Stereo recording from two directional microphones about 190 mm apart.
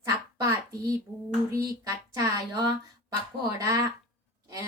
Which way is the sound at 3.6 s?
15° right (ahead or behind).